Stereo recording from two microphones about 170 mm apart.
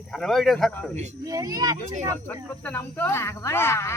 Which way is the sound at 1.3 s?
20° right (ahead or behind).